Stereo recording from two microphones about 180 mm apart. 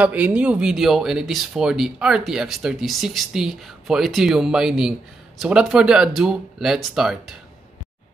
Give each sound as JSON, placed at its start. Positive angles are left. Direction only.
{"t": 0.0, "sound": "speech", "side_deg": -10}